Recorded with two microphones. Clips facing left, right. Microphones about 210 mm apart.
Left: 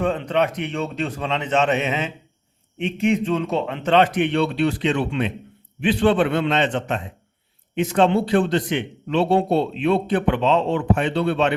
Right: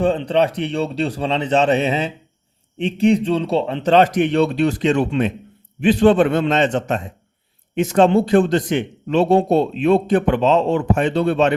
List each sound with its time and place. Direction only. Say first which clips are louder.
0.0 s a man's voice: right 4 dB; 30° right (ahead or behind)